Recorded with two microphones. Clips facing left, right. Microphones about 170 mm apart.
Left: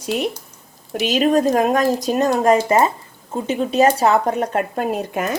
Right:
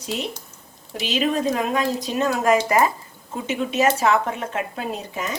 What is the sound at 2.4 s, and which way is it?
Speech, 30° left (ahead or behind).